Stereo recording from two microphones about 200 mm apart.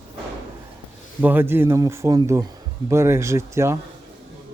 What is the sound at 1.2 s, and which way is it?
Speech, 10° right (ahead or behind).